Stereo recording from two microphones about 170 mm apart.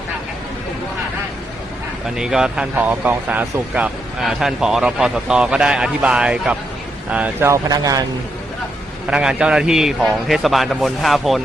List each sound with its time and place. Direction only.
2.1 s speech: 5° right (ahead or behind); by 8.0 s 20° right (ahead or behind)
9.0 s speech: 5° right (ahead or behind)